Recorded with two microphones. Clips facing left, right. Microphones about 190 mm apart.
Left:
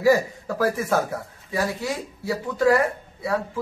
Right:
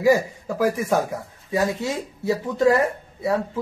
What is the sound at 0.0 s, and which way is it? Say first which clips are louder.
Speech: right 1 dB; 15° right (ahead or behind).